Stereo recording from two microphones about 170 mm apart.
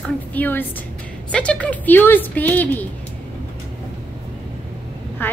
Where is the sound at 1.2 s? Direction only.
5° left (ahead or behind).